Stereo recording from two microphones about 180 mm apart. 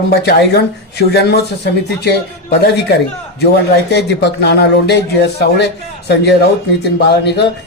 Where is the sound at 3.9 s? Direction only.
70° left (ahead or behind).